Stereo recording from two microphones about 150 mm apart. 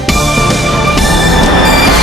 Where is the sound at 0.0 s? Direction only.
Centre (ahead or behind).